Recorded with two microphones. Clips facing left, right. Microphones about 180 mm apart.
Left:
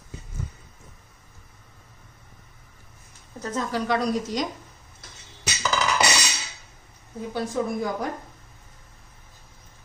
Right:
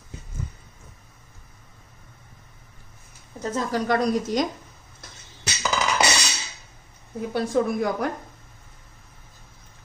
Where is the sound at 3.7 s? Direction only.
45° right (ahead or behind).